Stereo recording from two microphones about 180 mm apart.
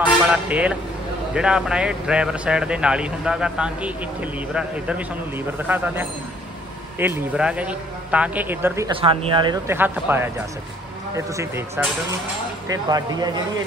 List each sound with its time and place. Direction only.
0.3 s a man's voice: 5° right (ahead or behind)
7.0 s a man's voice: 10° right (ahead or behind)
8.9 s speech: 30° right (ahead or behind)
9.7 s a man's voice: 10° right (ahead or behind)